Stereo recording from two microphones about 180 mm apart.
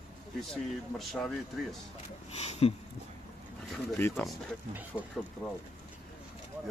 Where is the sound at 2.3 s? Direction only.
35° left (ahead or behind).